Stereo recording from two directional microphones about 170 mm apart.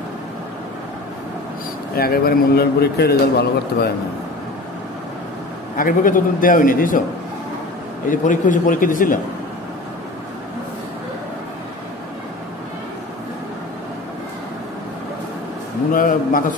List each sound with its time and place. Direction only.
2.0 s a man's voice: 65° left (ahead or behind)
5.8 s a man's voice: 55° left (ahead or behind)
8.1 s a man's voice: 50° left (ahead or behind)
15.9 s a man's voice: 55° left (ahead or behind)